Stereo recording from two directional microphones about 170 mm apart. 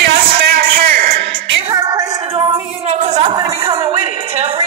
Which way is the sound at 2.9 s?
45° right (ahead or behind).